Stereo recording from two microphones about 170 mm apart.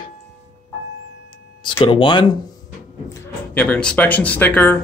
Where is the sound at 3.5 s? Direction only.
10° left (ahead or behind).